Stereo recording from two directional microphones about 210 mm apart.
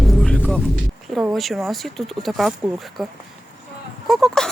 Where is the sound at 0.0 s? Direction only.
Centre (ahead or behind).